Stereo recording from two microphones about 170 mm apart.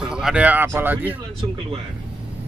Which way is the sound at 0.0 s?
5° right (ahead or behind).